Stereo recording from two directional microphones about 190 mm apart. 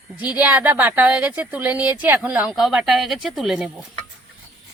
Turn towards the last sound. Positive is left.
turn(degrees=-5)  # may be behind; listen again after turning